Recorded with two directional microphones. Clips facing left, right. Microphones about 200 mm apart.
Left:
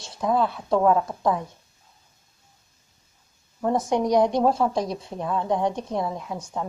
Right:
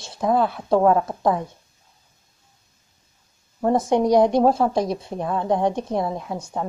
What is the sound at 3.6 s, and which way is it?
Speech, 30° right (ahead or behind).